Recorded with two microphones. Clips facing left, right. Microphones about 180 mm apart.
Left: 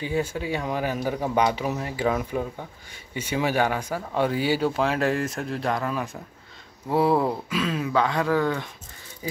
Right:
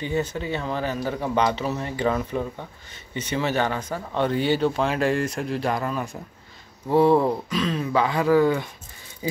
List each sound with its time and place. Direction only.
0.0 s speech: 10° left (ahead or behind)
9.2 s speech: 20° right (ahead or behind)